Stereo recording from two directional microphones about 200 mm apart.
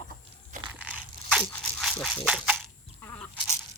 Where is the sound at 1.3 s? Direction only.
5° left (ahead or behind).